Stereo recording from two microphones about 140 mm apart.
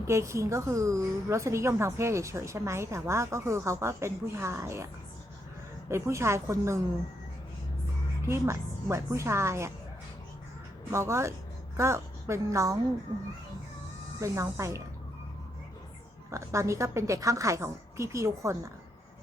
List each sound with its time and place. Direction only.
0.0 s a woman's voice: 20° right (ahead or behind)
5.9 s a woman's voice: 20° right (ahead or behind)
8.3 s a woman's voice: 20° right (ahead or behind)
10.9 s a woman's voice: 20° right (ahead or behind)
14.2 s a woman's voice: 20° right (ahead or behind)
16.3 s a woman's voice: 20° right (ahead or behind)